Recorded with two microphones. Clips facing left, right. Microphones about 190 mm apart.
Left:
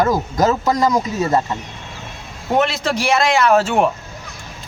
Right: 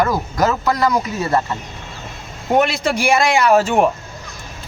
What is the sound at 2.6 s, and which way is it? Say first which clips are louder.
A man's voice: right 1 dB; 10° right (ahead or behind).